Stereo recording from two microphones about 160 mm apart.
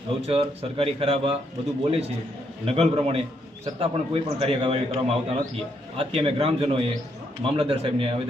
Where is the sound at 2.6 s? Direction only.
40° right (ahead or behind).